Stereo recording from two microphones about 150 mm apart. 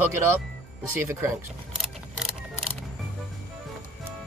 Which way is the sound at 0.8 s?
15° right (ahead or behind).